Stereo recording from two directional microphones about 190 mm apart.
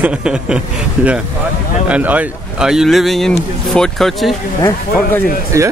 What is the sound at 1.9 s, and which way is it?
Speech, 10° right (ahead or behind).